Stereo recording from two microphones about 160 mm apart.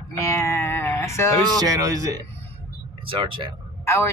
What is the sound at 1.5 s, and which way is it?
Speech, 20° right (ahead or behind).